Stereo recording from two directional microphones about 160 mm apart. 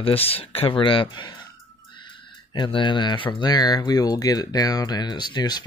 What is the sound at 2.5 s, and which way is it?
Speech, 30° left (ahead or behind).